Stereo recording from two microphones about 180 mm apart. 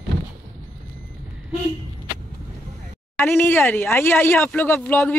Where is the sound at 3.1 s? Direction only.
15° left (ahead or behind).